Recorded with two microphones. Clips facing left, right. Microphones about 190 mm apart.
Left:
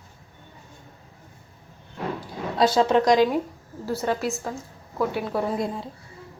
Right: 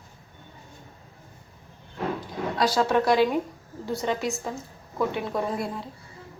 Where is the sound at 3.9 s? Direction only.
5° left (ahead or behind).